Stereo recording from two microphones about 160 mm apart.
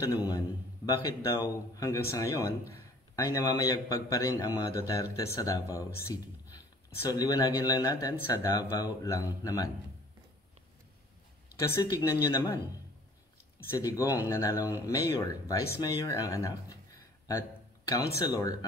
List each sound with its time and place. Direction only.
0.1 s speech: 20° left (ahead or behind)
11.7 s speech: 20° left (ahead or behind)
13.7 s speech: 20° left (ahead or behind)
16.0 s a sound: 20° left (ahead or behind)
18.1 s speech: 25° left (ahead or behind)